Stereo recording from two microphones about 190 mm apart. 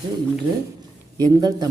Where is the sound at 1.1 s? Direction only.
20° right (ahead or behind).